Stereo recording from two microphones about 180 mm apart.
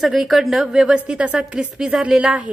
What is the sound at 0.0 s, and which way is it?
A woman's voice, centre (ahead or behind).